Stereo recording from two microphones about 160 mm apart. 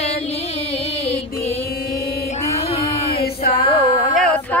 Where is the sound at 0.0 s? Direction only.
40° left (ahead or behind).